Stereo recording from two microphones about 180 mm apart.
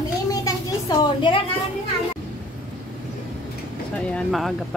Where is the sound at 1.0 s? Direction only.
25° left (ahead or behind).